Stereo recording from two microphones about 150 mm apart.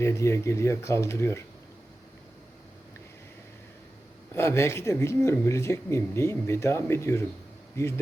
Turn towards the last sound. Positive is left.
turn(degrees=20)  # may be behind; listen again after turning